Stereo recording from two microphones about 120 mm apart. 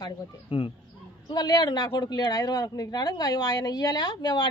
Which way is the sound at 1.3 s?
35° left (ahead or behind).